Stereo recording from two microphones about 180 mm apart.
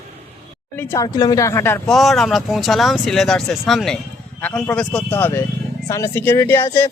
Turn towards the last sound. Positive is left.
turn(degrees=15)  # may be behind; listen again after turning